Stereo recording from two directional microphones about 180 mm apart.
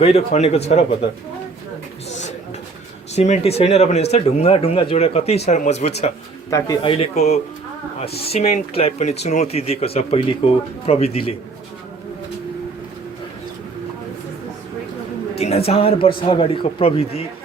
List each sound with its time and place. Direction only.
0.0 s speech: 35° left (ahead or behind)
3.2 s speech: 35° left (ahead or behind)
6.5 s speech: 15° left (ahead or behind)
6.8 s speech: 30° left (ahead or behind)
15.4 s speech: 35° left (ahead or behind)